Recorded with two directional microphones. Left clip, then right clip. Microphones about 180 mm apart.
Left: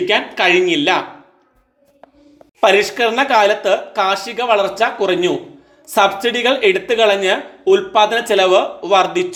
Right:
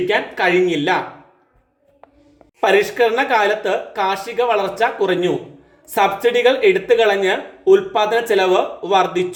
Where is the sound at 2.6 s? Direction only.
25° left (ahead or behind).